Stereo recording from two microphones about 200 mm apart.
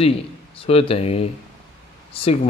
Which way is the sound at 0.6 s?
30° left (ahead or behind).